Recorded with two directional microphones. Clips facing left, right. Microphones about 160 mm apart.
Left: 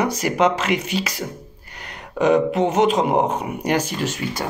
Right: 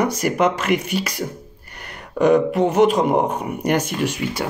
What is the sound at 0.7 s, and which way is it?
Speech, 50° right (ahead or behind).